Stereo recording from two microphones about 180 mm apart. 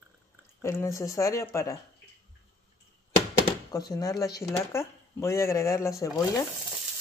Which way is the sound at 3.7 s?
20° left (ahead or behind).